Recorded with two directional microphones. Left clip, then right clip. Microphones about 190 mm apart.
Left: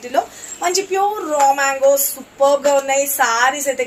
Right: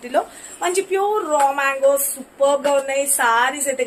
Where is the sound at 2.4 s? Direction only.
15° right (ahead or behind).